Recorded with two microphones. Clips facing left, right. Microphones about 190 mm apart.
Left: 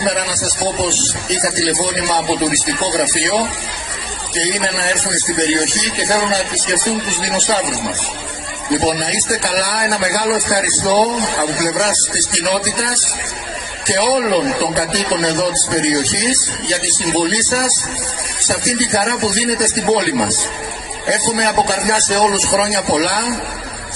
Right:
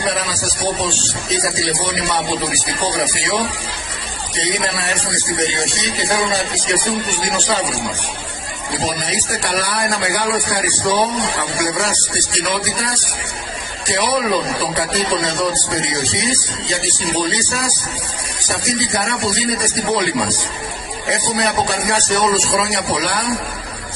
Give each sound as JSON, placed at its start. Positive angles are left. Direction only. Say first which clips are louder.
{"t": 0.0, "sound": "speech", "louder": "left 3 dB", "side_deg": 35}
{"t": 4.7, "sound": "speech", "louder": "left 3 dB", "side_deg": 35}
{"t": 8.8, "sound": "speech", "louder": "left 5 dB", "side_deg": 30}
{"t": 13.8, "sound": "speech", "louder": "left 3 dB", "side_deg": 35}